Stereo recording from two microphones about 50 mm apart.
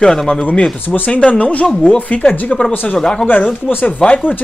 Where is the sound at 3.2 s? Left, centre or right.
Left.